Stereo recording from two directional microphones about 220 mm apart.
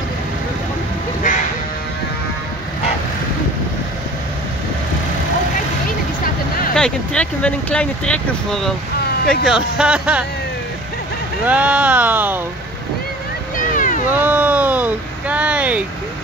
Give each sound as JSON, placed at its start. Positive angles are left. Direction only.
{"t": 6.7, "sound": "speech", "side_deg": 5}
{"t": 11.4, "sound": "speech", "side_deg": -5}
{"t": 13.7, "sound": "cat", "side_deg": 35}
{"t": 14.1, "sound": "speech", "side_deg": -10}